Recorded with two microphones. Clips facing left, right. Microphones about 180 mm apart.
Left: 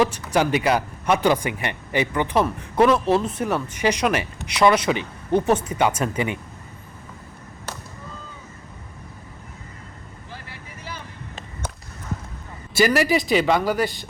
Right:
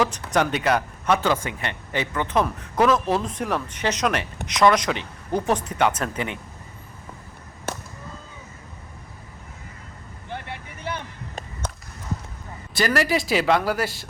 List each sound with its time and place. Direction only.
0.0 s speech: 10° left (ahead or behind)
10.2 s vehicle: 60° right (ahead or behind)
12.7 s speech: 5° left (ahead or behind)